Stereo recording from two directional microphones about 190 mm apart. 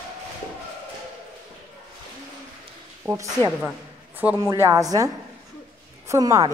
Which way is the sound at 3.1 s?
15° right (ahead or behind).